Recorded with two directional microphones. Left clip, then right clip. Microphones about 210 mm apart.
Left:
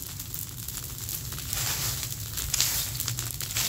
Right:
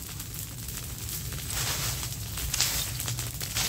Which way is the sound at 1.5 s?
30° left (ahead or behind).